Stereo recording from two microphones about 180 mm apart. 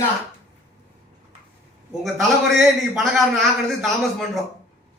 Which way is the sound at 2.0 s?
Centre (ahead or behind).